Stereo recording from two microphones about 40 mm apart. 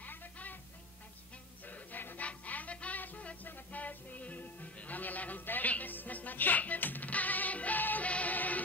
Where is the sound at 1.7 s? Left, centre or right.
Left.